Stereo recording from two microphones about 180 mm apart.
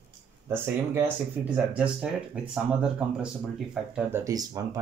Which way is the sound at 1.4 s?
10° right (ahead or behind).